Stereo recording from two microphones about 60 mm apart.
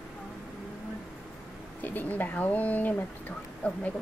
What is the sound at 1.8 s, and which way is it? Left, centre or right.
A woman's voice, left.